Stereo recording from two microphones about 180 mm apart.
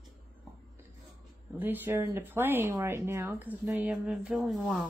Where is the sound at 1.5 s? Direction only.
10° right (ahead or behind).